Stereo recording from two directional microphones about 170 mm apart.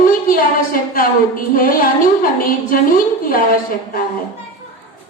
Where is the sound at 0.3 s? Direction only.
55° left (ahead or behind).